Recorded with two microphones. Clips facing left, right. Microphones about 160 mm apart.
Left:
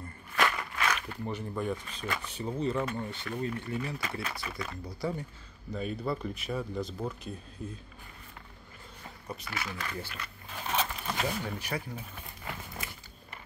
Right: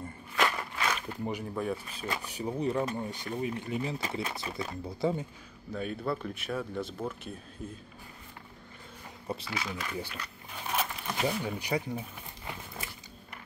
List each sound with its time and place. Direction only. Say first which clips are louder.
0.4 s a sound: even; 20° right (ahead or behind)
1.0 s speech: right 2 dB; 15° right (ahead or behind)
1.4 s speech: even; 5° right (ahead or behind); by 5.2 s 25° right (ahead or behind)
5.7 s speech: even; centre (ahead or behind)
9.5 s speech: right 2 dB; 15° right (ahead or behind)
10.7 s pigeon: left 1 dB; 10° right (ahead or behind)